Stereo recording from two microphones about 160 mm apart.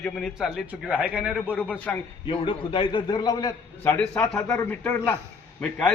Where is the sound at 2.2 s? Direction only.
30° left (ahead or behind).